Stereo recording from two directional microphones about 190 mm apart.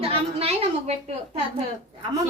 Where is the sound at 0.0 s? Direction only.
30° right (ahead or behind).